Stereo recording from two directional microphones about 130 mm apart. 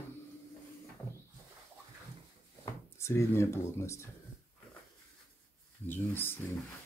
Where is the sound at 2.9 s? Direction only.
20° left (ahead or behind).